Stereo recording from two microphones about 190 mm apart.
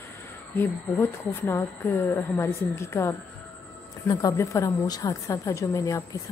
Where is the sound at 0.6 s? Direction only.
10° left (ahead or behind).